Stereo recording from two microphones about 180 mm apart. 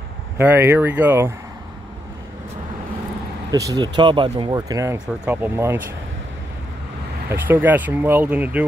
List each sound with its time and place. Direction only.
0.4 s speech: 10° right (ahead or behind)
3.5 s speech: 20° right (ahead or behind)
5.0 s speech: 5° right (ahead or behind)
7.2 s speech: 10° right (ahead or behind)